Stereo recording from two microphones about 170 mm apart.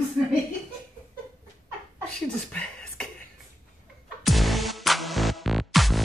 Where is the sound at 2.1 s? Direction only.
5° left (ahead or behind).